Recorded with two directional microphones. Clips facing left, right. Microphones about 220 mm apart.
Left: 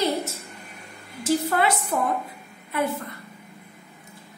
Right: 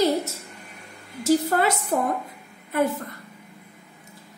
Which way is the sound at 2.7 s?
45° right (ahead or behind).